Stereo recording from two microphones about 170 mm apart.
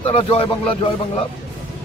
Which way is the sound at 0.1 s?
35° left (ahead or behind).